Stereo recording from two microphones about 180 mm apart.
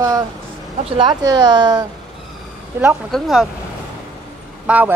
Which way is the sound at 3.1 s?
Centre (ahead or behind).